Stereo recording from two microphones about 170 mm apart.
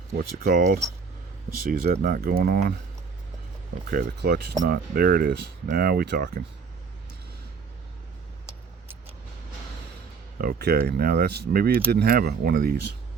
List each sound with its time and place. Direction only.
0.2 s speech: 65° right (ahead or behind)
1.6 s speech: 55° right (ahead or behind)
3.8 s speech: 60° right (ahead or behind)
10.3 s speech: 60° right (ahead or behind)